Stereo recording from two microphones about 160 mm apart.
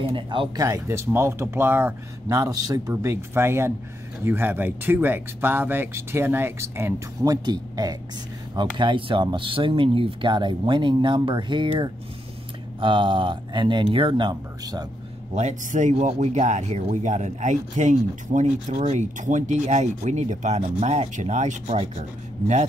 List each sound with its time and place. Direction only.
0.0 s speech: 30° right (ahead or behind)
0.7 s speech: 15° right (ahead or behind)
15.3 s speech: 50° right (ahead or behind)